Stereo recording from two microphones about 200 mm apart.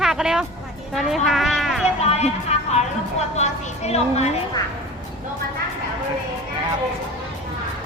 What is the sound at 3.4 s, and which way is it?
Speech, 35° left (ahead or behind).